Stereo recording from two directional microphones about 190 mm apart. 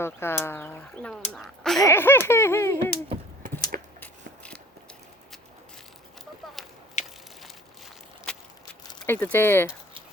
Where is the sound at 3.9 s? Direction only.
5° left (ahead or behind).